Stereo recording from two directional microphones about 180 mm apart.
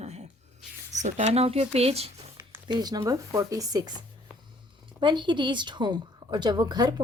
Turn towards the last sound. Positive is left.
turn(degrees=-25)  # may be behind; listen again after turning